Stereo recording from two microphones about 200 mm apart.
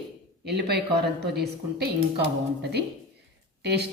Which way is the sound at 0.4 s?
55° right (ahead or behind).